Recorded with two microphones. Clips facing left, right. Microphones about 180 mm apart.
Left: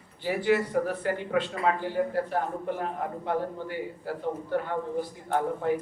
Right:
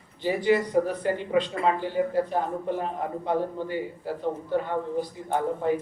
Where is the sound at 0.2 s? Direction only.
20° right (ahead or behind).